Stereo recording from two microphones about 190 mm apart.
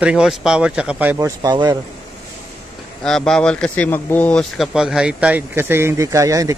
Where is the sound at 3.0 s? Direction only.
Centre (ahead or behind); by 6.6 s 15° right (ahead or behind).